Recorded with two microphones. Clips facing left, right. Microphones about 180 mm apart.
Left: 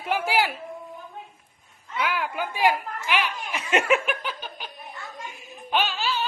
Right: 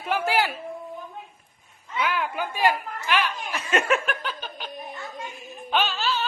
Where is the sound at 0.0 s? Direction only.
15° left (ahead or behind).